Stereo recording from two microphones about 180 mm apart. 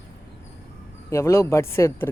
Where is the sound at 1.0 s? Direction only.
15° left (ahead or behind).